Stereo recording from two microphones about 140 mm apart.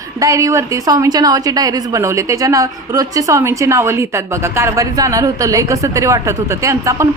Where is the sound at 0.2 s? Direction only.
25° right (ahead or behind).